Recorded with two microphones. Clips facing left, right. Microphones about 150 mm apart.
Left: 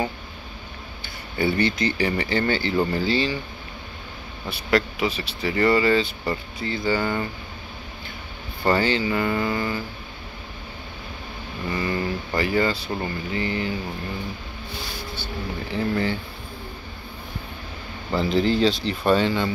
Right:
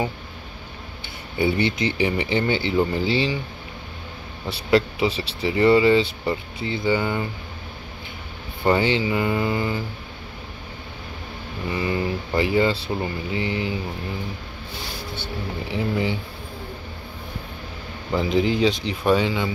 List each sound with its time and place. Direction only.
1.4 s speech: 20° right (ahead or behind)
4.6 s speech: 25° right (ahead or behind)
8.6 s speech: 20° right (ahead or behind)
11.7 s speech: 15° right (ahead or behind)
15.7 s speech: 10° right (ahead or behind)
18.1 s speech: 15° right (ahead or behind)